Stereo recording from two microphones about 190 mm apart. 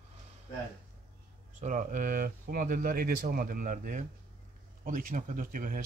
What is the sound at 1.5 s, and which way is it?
Speech, 45° right (ahead or behind).